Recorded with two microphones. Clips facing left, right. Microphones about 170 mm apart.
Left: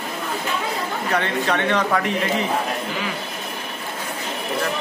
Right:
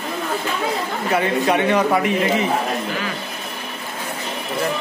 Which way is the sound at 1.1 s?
10° right (ahead or behind).